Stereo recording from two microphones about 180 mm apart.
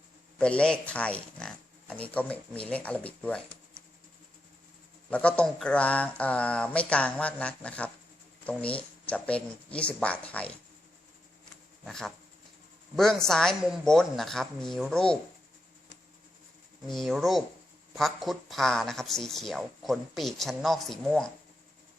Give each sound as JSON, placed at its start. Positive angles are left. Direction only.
{"t": 0.3, "sound": "speech", "side_deg": 5}
{"t": 5.1, "sound": "speech", "side_deg": 5}
{"t": 11.9, "sound": "speech", "side_deg": 5}
{"t": 16.8, "sound": "speech", "side_deg": 0}